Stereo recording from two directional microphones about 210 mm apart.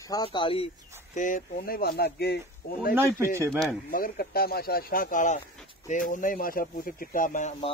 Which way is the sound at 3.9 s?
45° left (ahead or behind).